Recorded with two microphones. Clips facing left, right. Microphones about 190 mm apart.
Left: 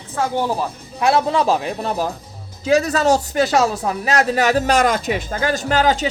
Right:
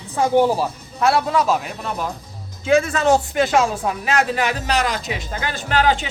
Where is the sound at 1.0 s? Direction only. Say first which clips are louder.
Left 1 dB; 20° left (ahead or behind).